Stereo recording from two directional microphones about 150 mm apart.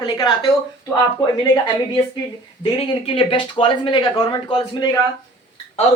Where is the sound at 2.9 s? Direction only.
35° left (ahead or behind).